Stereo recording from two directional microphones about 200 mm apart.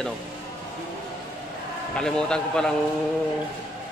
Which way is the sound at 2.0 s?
5° left (ahead or behind).